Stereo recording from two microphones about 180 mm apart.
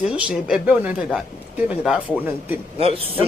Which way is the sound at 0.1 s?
5° right (ahead or behind).